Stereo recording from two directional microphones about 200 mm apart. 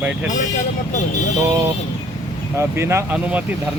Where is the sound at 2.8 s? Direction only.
15° right (ahead or behind).